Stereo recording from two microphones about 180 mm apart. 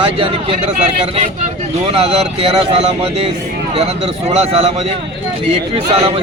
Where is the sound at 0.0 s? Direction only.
30° right (ahead or behind).